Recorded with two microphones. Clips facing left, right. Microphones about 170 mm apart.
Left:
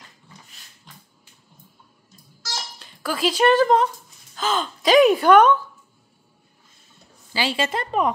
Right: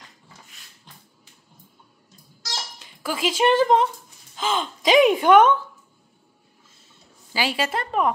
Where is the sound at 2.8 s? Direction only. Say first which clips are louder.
Left 2 dB; 10° right (ahead or behind).